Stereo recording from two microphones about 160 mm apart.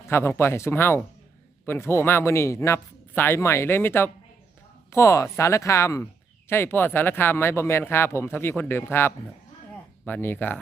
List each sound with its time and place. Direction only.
0.0 s speech: 15° left (ahead or behind)